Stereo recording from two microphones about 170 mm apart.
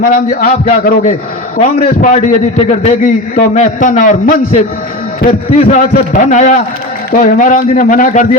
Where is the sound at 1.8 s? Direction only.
45° left (ahead or behind).